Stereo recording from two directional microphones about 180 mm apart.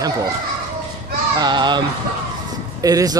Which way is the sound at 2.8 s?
20° right (ahead or behind).